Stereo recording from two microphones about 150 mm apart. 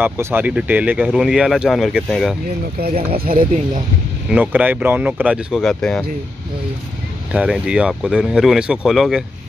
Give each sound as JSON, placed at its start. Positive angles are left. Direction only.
{"t": 0.0, "sound": "speech", "side_deg": -15}
{"t": 3.1, "sound": "speech", "side_deg": -70}
{"t": 4.3, "sound": "speech", "side_deg": -10}
{"t": 7.3, "sound": "speech", "side_deg": -5}